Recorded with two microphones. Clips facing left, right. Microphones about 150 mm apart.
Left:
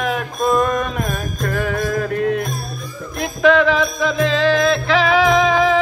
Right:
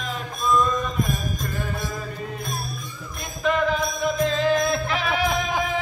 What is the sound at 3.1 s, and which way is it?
Music, 90° left.